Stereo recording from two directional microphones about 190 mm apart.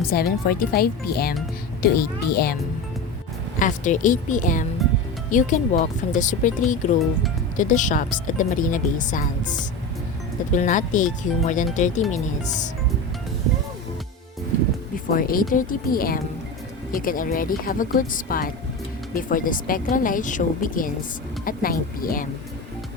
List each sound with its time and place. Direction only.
0.0 s speech: 50° left (ahead or behind)
3.6 s speech: 40° left (ahead or behind)
15.1 s speech: 50° left (ahead or behind)